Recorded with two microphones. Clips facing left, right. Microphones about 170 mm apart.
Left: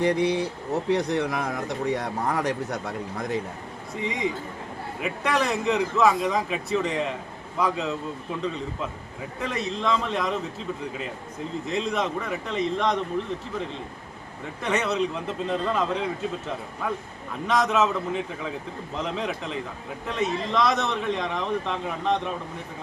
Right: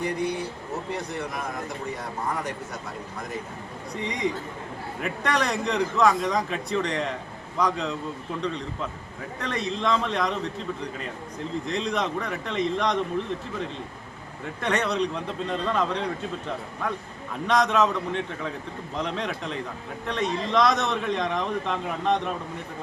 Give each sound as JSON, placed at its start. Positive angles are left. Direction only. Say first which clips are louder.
{"t": 0.0, "sound": "speech", "louder": "left 5 dB", "side_deg": 90}
{"t": 4.0, "sound": "speech", "louder": "even", "side_deg": 0}
{"t": 9.4, "sound": "speech", "louder": "even", "side_deg": 0}
{"t": 14.6, "sound": "speech", "louder": "even", "side_deg": 0}
{"t": 17.4, "sound": "speech", "louder": "right 1 dB", "side_deg": 0}